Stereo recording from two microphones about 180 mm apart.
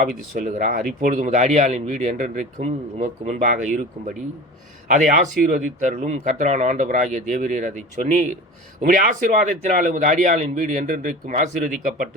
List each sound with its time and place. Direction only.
0.3 s speech: 50° right (ahead or behind)